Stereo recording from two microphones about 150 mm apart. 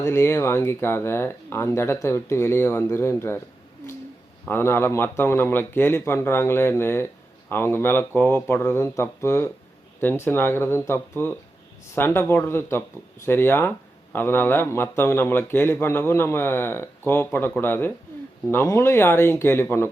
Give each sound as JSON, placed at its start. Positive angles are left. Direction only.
{"t": 0.0, "sound": "speech", "side_deg": 15}
{"t": 4.4, "sound": "speech", "side_deg": 15}